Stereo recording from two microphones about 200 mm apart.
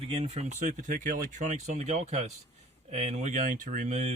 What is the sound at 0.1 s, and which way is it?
Speech, 30° right (ahead or behind).